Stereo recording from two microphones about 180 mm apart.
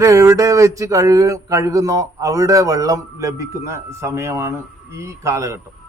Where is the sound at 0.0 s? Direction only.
15° right (ahead or behind).